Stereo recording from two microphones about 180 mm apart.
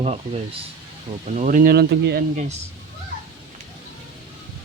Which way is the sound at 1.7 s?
65° right (ahead or behind).